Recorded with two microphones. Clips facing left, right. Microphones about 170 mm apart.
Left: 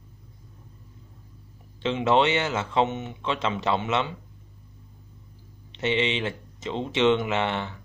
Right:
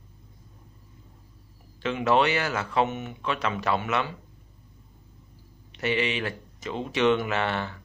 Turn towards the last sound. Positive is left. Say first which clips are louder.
# left 1 dB
turn(degrees=20)  # may be behind; listen again after turning